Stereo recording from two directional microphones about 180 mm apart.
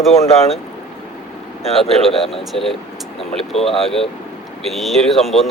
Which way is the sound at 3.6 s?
Centre (ahead or behind).